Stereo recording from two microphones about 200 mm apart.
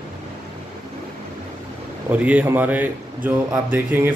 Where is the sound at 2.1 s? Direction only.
5° right (ahead or behind).